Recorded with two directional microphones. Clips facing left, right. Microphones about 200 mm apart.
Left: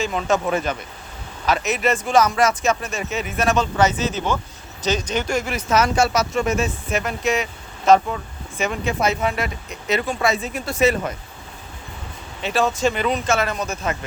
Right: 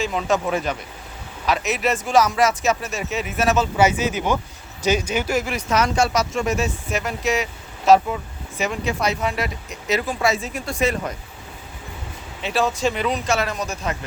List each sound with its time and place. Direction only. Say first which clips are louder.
0.0 s speech: left 1 dB; centre (ahead or behind)
12.4 s speech: left 1 dB; centre (ahead or behind)